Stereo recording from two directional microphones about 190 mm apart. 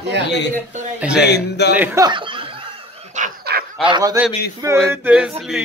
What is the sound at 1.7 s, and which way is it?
Snicker, 10° right (ahead or behind).